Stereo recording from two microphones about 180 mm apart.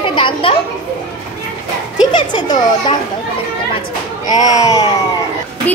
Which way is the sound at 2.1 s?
25° left (ahead or behind).